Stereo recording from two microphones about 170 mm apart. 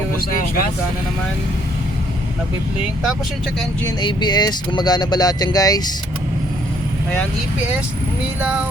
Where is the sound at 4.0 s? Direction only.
25° left (ahead or behind).